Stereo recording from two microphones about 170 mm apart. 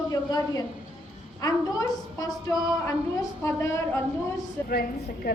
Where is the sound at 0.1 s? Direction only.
25° left (ahead or behind).